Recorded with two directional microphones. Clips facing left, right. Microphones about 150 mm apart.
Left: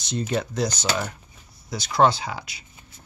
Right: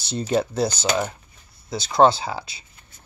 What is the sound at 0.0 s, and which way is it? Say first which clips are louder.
Speech: right 4 dB; 30° right (ahead or behind).